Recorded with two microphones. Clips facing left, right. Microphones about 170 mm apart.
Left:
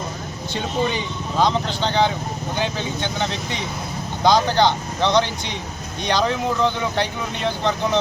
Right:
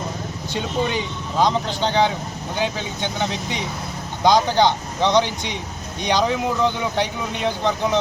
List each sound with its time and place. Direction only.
1.4 s speech: 15° right (ahead or behind)